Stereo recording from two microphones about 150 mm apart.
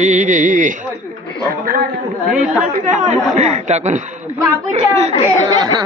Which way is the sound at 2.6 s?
65° right (ahead or behind).